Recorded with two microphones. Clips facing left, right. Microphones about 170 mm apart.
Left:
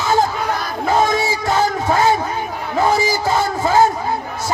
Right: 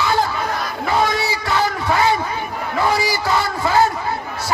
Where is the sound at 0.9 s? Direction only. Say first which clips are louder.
Left 3 dB; 45° left (ahead or behind).